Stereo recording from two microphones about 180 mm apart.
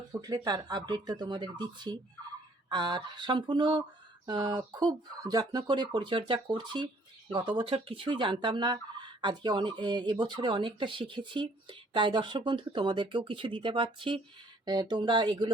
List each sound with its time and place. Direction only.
0.1 s speech: 20° right (ahead or behind)